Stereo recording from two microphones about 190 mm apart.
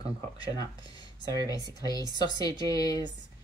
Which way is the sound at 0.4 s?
20° left (ahead or behind).